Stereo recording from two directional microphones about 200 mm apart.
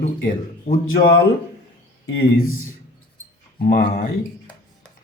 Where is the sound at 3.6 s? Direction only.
50° left (ahead or behind).